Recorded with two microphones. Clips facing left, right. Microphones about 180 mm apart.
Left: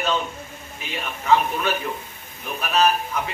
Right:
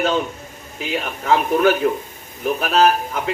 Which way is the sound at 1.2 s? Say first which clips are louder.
Right 4 dB; 65° right (ahead or behind).